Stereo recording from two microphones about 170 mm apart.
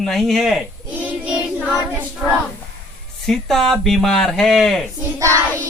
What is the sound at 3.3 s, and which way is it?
Speech, centre (ahead or behind).